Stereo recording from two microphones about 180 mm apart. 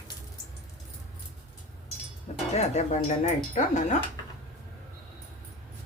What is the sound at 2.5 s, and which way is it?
Speech, 40° left (ahead or behind).